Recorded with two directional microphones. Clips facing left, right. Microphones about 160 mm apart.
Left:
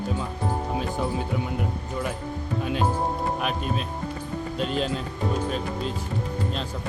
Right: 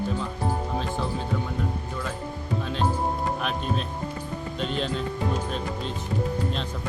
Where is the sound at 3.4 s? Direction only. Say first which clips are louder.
Left 1 dB; 5° left (ahead or behind).